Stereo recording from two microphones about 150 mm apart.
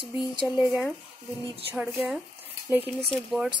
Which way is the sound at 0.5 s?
10° right (ahead or behind).